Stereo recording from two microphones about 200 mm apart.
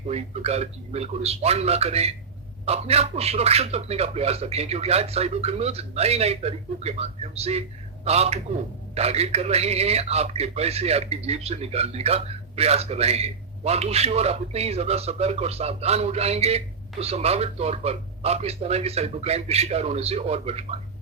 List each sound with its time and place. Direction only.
0.1 s speech: 30° right (ahead or behind)